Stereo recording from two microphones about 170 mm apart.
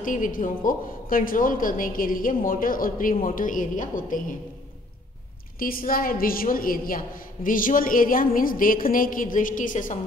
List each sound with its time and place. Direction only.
0.0 s a woman's voice: 50° left (ahead or behind)
5.6 s a woman's voice: 55° left (ahead or behind)